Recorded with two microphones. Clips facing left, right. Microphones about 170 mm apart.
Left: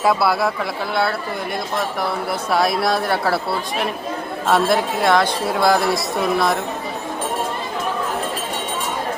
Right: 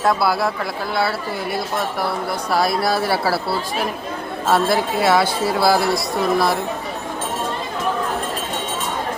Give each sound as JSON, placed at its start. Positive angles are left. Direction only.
{"t": 0.0, "sound": "speech", "side_deg": 0}